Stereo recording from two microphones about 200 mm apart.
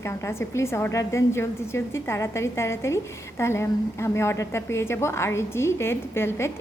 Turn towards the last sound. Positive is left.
turn(degrees=10)  # may be behind; listen again after turning